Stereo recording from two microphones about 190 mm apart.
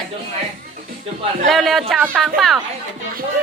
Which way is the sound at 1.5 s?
Centre (ahead or behind).